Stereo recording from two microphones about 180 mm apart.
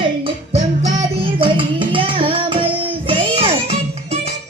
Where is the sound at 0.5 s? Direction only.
35° right (ahead or behind).